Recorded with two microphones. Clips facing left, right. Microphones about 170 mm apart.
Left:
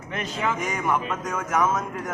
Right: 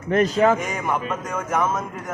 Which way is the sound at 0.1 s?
40° right (ahead or behind).